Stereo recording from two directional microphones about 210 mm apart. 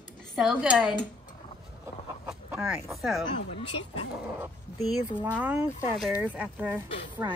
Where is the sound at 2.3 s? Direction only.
5° right (ahead or behind).